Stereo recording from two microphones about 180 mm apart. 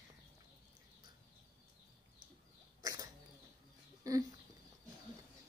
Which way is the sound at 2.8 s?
20° right (ahead or behind).